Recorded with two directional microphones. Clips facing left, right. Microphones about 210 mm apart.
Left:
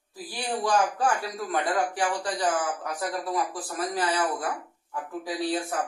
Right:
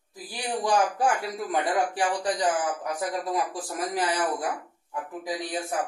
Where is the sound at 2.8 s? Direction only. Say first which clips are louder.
Right 1 dB; 15° right (ahead or behind).